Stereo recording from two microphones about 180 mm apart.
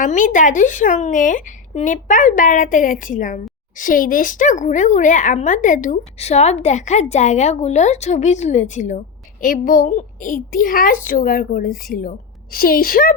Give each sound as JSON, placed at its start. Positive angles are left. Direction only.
{"t": 0.0, "sound": "a woman's voice", "side_deg": 45}